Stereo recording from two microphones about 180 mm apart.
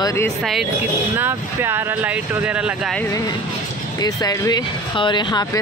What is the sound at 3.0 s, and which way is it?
Speech, 20° left (ahead or behind).